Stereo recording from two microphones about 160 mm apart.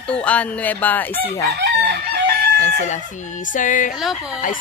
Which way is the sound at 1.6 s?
85° right.